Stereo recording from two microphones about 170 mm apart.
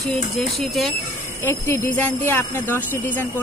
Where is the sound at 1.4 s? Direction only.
15° left (ahead or behind).